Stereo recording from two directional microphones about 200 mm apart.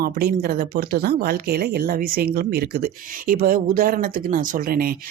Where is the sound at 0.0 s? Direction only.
50° right (ahead or behind).